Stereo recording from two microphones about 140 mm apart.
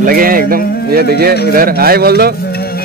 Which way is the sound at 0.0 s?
90° right.